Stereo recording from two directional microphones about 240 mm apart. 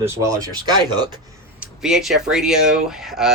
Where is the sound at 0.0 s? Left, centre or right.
Centre.